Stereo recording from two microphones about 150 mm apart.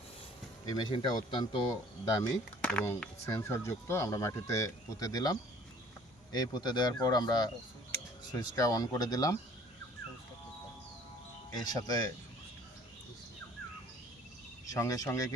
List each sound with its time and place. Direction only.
0.7 s speech: 30° left (ahead or behind)
2.6 s speech: 10° left (ahead or behind)
11.5 s speech: 25° left (ahead or behind)
14.7 s speech: 25° left (ahead or behind)